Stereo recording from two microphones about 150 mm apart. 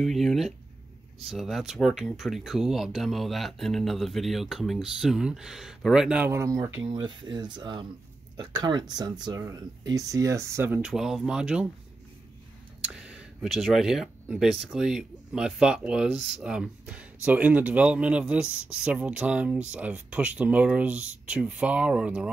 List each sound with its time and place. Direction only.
0.0 s speech: centre (ahead or behind); by 6.8 s 20° right (ahead or behind)
6.8 s speech: 30° right (ahead or behind); by 11.6 s 5° right (ahead or behind)
12.8 s speech: 5° right (ahead or behind)